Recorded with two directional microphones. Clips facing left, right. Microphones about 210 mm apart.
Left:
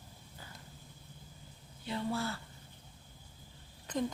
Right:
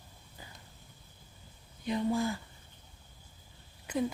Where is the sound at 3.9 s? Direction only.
10° right (ahead or behind).